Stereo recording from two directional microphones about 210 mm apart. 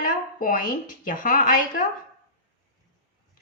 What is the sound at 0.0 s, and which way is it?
A woman's voice, 40° left (ahead or behind).